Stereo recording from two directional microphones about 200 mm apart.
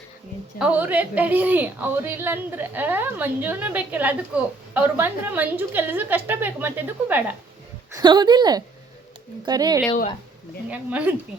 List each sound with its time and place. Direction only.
0.6 s a woman's voice: 10° right (ahead or behind)
7.9 s a woman's voice: 20° right (ahead or behind)
10.7 s a woman's voice: 5° right (ahead or behind)